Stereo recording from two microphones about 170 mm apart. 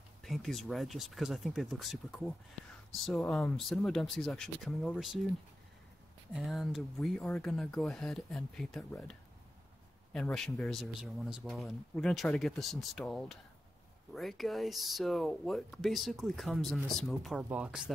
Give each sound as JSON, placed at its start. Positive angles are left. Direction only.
{"t": 0.2, "sound": "speech", "side_deg": 0}
{"t": 6.3, "sound": "speech", "side_deg": 0}
{"t": 10.1, "sound": "speech", "side_deg": 5}